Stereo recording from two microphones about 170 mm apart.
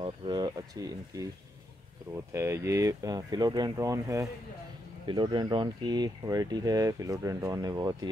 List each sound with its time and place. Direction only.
0.0 s speech: 30° right (ahead or behind)